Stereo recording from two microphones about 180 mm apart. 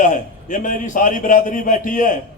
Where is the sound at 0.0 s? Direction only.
45° left (ahead or behind).